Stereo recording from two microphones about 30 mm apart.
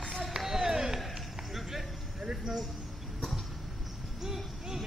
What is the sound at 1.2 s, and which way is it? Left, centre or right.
Run, centre.